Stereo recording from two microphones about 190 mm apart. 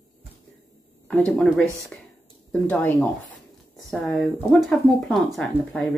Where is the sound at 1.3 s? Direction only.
5° left (ahead or behind).